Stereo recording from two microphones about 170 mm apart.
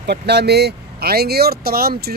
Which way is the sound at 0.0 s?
75° right (ahead or behind).